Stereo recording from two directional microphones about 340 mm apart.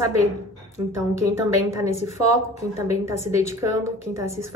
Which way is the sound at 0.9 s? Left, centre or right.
Centre.